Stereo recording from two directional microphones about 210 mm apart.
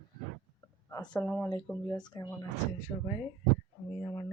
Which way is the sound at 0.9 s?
15° left (ahead or behind).